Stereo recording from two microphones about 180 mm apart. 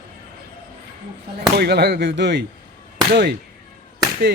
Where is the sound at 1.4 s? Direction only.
65° right (ahead or behind).